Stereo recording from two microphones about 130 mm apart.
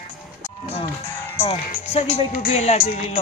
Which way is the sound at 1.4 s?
50° left (ahead or behind).